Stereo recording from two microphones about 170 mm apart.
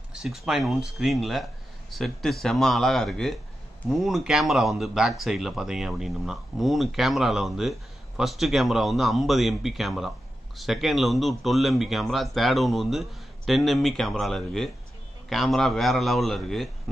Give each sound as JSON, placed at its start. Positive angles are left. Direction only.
{"t": 0.1, "sound": "speech", "side_deg": -5}